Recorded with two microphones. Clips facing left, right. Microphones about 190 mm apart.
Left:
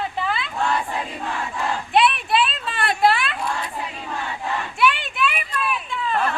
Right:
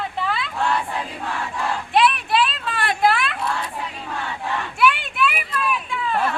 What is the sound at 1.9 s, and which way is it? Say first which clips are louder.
Children playing: even; centre (ahead or behind).